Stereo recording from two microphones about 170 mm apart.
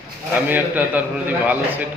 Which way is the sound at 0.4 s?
10° right (ahead or behind).